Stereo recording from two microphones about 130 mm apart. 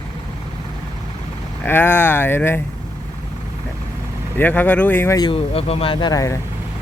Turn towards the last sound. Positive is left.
turn(degrees=25)  # may be behind; listen again after turning